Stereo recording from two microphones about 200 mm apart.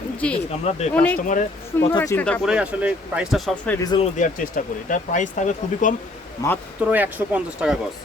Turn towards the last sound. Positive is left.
turn(degrees=-5)  # may be behind; listen again after turning